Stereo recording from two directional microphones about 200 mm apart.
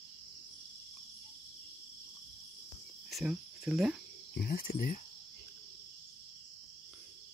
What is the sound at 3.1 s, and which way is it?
Speech, 5° right (ahead or behind).